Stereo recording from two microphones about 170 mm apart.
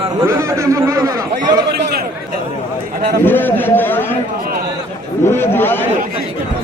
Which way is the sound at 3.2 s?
10° left (ahead or behind).